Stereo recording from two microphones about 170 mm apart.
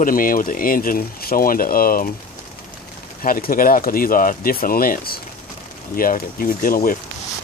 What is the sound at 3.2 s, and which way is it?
Speech, 60° left (ahead or behind).